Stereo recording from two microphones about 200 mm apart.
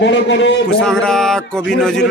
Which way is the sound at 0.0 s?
60° left (ahead or behind).